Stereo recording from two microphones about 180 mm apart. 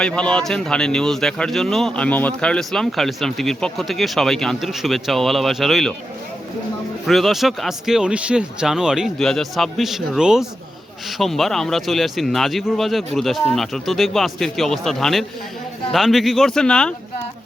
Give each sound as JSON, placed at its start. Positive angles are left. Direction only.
{"t": 0.0, "sound": "speech", "side_deg": 5}
{"t": 7.1, "sound": "speech", "side_deg": 0}